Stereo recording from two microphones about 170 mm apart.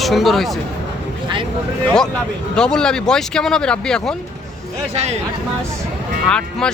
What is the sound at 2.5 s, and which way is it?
Speech, 5° left (ahead or behind).